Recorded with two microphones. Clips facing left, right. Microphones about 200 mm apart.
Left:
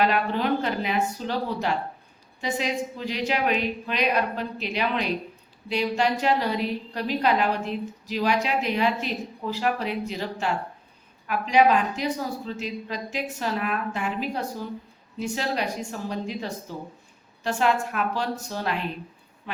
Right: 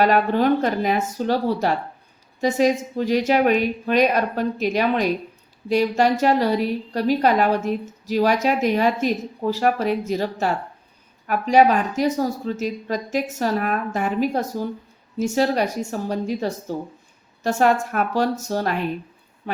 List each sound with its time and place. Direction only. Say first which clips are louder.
0.0 s a woman's voice: right 6 dB; 45° right (ahead or behind)